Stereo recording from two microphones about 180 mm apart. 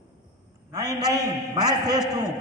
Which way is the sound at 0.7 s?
20° right (ahead or behind).